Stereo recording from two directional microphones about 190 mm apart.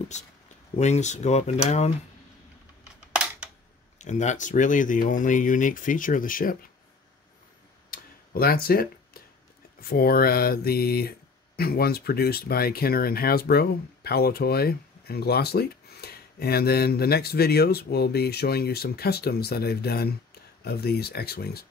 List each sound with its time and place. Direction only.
0.1 s speech: 35° left (ahead or behind)
4.0 s speech: 40° left (ahead or behind)
7.9 s tick-tock: 50° left (ahead or behind)
9.8 s mantra: 55° left (ahead or behind)